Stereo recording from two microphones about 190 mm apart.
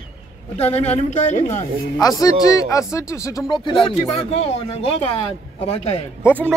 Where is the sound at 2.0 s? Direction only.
20° left (ahead or behind).